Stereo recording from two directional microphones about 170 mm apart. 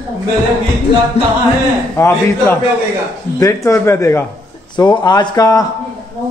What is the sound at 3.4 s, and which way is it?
Speech, 20° left (ahead or behind).